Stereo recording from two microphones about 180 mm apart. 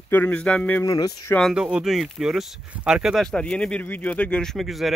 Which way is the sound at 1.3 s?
Centre (ahead or behind).